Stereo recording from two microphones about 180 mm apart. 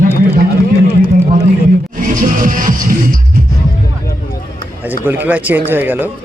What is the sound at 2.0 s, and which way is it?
Music, 50° right (ahead or behind).